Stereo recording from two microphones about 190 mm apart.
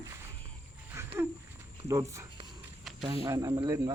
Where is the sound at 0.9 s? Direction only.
10° right (ahead or behind).